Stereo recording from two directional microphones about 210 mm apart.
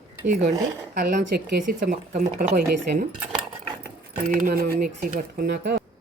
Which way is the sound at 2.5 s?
50° right (ahead or behind).